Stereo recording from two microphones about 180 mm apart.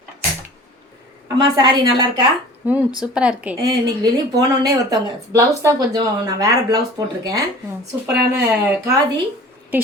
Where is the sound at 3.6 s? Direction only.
20° right (ahead or behind).